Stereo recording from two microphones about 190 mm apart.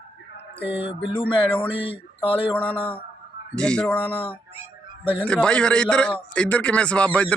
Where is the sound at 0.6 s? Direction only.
10° right (ahead or behind).